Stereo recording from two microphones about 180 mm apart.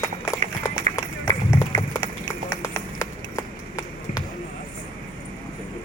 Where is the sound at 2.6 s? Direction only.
15° left (ahead or behind).